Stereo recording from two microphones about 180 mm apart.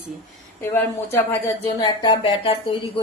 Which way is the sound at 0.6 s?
10° left (ahead or behind).